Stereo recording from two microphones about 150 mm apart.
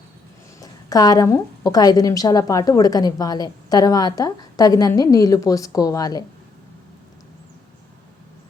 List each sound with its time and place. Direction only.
0.6 s a woman's voice: 25° left (ahead or behind)